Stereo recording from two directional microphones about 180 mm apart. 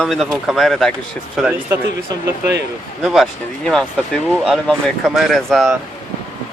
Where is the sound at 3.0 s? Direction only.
Centre (ahead or behind).